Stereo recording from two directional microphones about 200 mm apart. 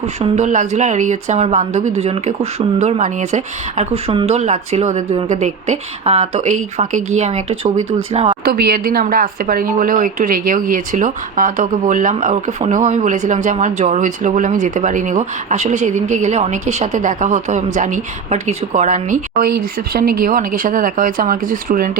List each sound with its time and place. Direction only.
0.2 s speech: 35° right (ahead or behind)
8.4 s speech: 50° right (ahead or behind)